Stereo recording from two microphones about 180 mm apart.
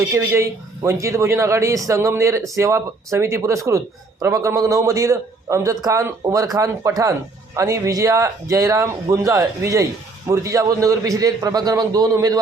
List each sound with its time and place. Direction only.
0.1 s speech: 15° right (ahead or behind)